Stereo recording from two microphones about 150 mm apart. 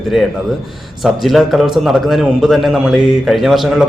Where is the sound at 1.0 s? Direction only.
Centre (ahead or behind).